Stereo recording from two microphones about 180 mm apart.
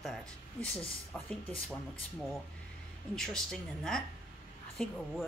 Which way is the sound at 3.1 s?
5° left (ahead or behind).